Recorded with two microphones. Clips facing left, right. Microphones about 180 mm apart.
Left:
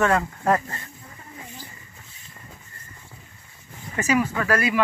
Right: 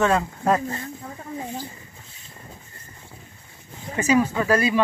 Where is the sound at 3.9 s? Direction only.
20° right (ahead or behind).